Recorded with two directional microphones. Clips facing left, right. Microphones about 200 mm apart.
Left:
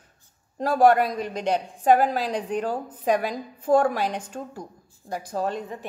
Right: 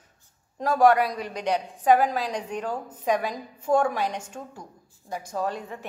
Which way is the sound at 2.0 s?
30° left (ahead or behind).